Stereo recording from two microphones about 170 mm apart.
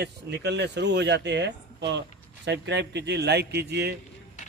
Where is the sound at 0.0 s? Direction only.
85° right.